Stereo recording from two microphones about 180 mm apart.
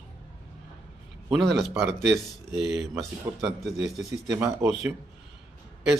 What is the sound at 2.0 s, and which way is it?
Speech, 70° right (ahead or behind).